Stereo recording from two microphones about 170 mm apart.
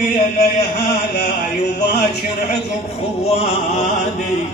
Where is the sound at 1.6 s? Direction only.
90° left.